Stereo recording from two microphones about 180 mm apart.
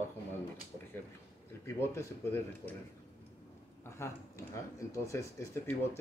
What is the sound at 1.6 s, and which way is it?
Speech, 15° left (ahead or behind).